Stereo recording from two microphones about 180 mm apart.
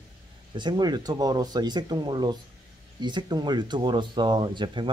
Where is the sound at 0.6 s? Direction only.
25° right (ahead or behind).